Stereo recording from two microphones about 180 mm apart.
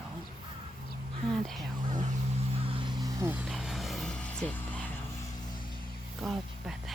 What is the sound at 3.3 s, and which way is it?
Vehicle, centre (ahead or behind).